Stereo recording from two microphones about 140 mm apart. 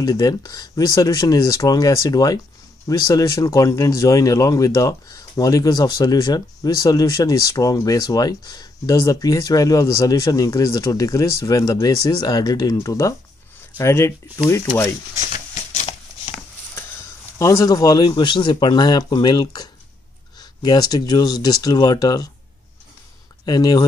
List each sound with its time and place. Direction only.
0.0 s speech: 25° left (ahead or behind)
15.3 s a sound: 55° left (ahead or behind)
17.4 s speech: 20° left (ahead or behind)
23.4 s speech: 25° left (ahead or behind)